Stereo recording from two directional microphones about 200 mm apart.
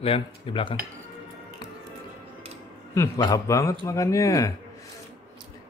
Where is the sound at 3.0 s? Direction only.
20° left (ahead or behind).